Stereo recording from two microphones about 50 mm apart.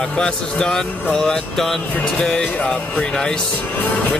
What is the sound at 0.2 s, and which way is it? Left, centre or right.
Speech, centre.